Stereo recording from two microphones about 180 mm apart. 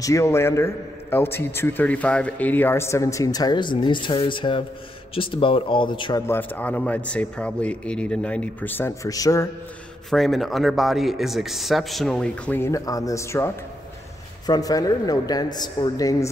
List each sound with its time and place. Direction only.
0.0 s a man's voice: 15° left (ahead or behind)
6.2 s a man's voice: 10° left (ahead or behind)
10.0 s a man's voice: centre (ahead or behind); by 16.3 s 20° left (ahead or behind)